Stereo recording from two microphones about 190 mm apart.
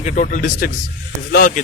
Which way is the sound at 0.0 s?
40° left (ahead or behind).